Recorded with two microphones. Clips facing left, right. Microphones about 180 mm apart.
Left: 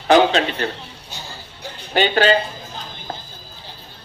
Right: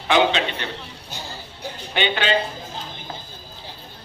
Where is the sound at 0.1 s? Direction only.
40° left (ahead or behind).